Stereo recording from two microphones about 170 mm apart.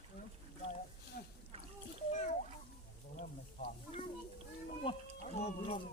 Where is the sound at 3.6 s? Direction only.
45° left (ahead or behind).